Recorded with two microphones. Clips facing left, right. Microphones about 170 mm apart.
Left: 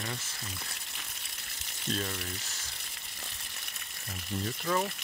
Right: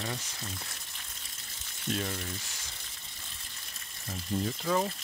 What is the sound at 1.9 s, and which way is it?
Speech, 15° right (ahead or behind).